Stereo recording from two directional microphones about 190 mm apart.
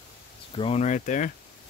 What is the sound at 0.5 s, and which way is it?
Speech, 30° left (ahead or behind).